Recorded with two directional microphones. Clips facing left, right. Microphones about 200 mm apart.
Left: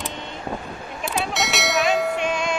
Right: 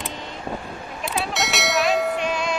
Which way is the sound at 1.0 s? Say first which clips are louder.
Left 1 dB; centre (ahead or behind).